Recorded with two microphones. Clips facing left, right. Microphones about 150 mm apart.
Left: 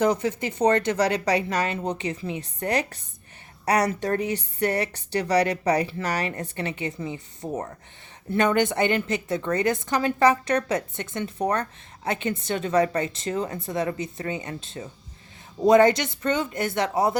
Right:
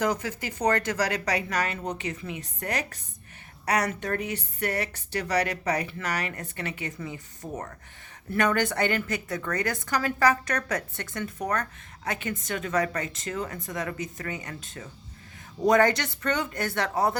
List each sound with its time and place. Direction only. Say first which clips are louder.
0.0 s a woman's voice: left 5 dB; 25° left (ahead or behind)